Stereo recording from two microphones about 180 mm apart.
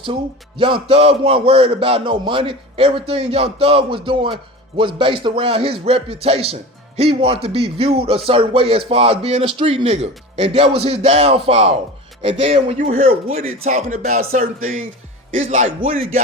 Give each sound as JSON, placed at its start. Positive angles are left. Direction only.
{"t": 0.6, "sound": "speech", "side_deg": -30}
{"t": 15.4, "sound": "speech", "side_deg": -40}